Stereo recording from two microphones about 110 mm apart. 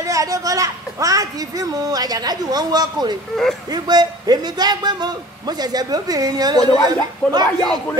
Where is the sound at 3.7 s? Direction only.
40° right (ahead or behind).